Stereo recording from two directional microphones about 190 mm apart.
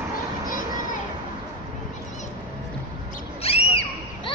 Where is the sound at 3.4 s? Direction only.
30° left (ahead or behind).